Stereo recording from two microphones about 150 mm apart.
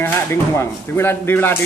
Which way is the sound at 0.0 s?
15° left (ahead or behind).